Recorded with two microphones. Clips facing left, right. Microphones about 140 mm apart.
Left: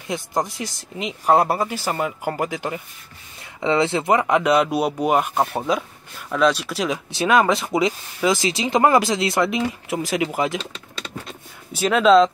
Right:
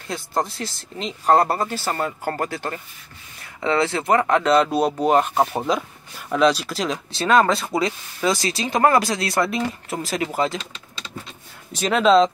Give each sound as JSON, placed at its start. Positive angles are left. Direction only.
{"t": 0.1, "sound": "speech", "side_deg": 15}
{"t": 5.4, "sound": "speech", "side_deg": -5}
{"t": 11.7, "sound": "speech", "side_deg": 5}